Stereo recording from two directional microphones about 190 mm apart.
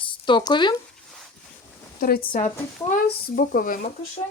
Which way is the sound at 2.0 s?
50° left (ahead or behind).